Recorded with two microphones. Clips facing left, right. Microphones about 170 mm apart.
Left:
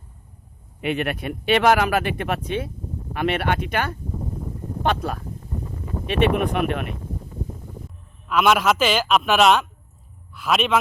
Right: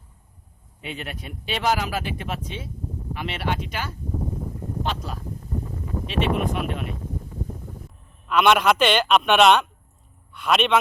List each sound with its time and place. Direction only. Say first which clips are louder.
0.8 s speech: left 10 dB; 65° left (ahead or behind)
8.3 s a man's voice: even; 5° left (ahead or behind)